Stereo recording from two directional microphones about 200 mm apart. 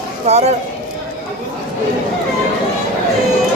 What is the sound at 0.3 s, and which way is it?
Speech, 30° right (ahead or behind).